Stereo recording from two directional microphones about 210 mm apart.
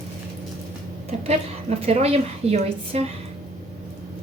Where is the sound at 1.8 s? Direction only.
30° right (ahead or behind).